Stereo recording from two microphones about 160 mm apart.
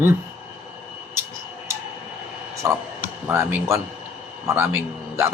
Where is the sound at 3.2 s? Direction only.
15° right (ahead or behind).